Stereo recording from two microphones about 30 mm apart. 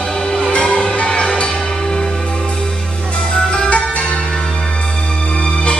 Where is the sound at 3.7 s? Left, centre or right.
Left.